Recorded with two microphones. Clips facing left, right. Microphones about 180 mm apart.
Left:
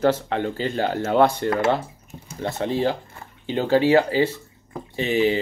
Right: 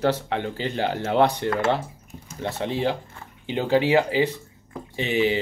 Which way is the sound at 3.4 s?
15° right (ahead or behind).